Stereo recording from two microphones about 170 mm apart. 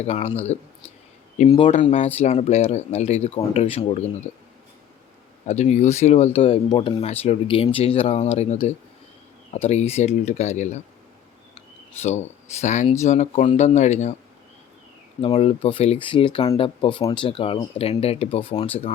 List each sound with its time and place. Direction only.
0.0 s speech: 40° left (ahead or behind)
1.8 s speech: 45° left (ahead or behind)
5.5 s speech: 40° left (ahead or behind)
12.6 s speech: 45° left (ahead or behind)
15.2 s speech: 35° left (ahead or behind)